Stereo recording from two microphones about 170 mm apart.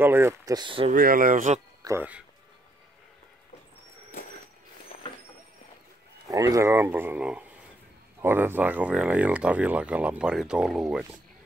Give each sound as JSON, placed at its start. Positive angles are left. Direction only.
{"t": 0.0, "sound": "speech", "side_deg": -15}
{"t": 0.9, "sound": "speech", "side_deg": -55}
{"t": 1.9, "sound": "speech", "side_deg": -10}
{"t": 6.2, "sound": "speech", "side_deg": -20}